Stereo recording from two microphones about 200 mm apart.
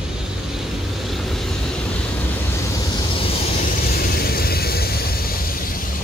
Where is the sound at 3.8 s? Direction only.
50° left (ahead or behind).